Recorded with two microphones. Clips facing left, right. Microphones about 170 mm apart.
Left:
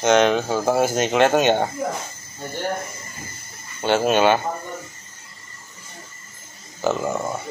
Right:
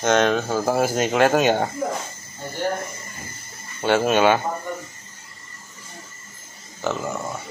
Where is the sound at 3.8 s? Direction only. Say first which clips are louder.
Even; centre (ahead or behind).